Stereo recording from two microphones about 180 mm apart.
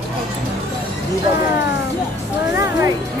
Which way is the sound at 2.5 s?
15° right (ahead or behind).